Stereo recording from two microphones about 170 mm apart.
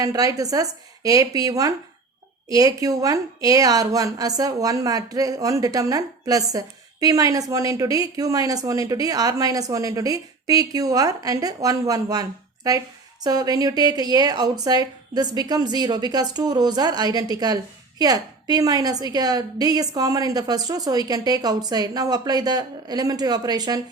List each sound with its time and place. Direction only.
0.0 s speech: 20° right (ahead or behind)